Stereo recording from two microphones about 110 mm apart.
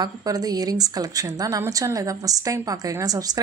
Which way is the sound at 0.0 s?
35° right (ahead or behind).